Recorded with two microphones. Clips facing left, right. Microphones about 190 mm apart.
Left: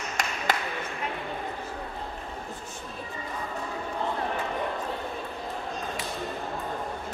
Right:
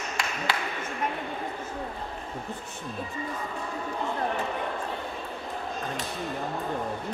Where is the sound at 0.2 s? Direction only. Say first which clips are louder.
Left 2 dB; 45° left (ahead or behind).